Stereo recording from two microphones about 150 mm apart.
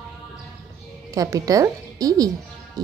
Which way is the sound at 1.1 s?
25° right (ahead or behind).